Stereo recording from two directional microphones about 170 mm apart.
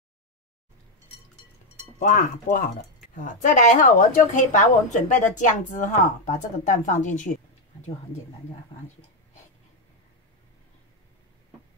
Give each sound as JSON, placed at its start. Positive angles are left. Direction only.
{"t": 2.0, "sound": "a woman's voice", "side_deg": 45}